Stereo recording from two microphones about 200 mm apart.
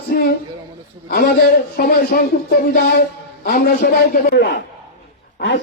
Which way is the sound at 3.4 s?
50° left (ahead or behind).